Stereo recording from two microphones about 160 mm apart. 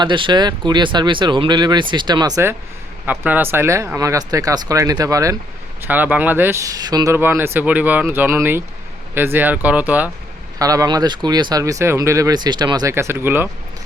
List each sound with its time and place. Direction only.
0.0 s speech: 30° right (ahead or behind); by 10.1 s 10° right (ahead or behind)
10.6 s speech: 20° right (ahead or behind)